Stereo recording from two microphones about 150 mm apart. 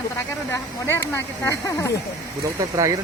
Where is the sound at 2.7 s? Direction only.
20° right (ahead or behind).